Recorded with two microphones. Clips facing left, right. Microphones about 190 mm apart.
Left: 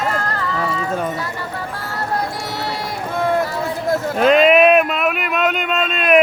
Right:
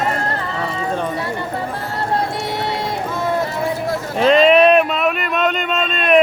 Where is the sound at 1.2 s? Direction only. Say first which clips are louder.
Right 3 dB; 25° right (ahead or behind).